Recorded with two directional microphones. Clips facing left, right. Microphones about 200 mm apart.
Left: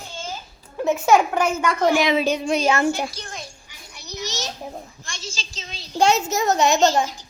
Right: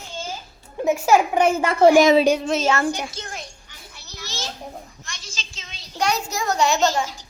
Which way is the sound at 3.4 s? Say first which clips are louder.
Left 1 dB; 15° left (ahead or behind).